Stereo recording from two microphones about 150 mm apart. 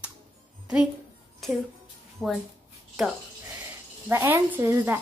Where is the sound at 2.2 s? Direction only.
5° right (ahead or behind).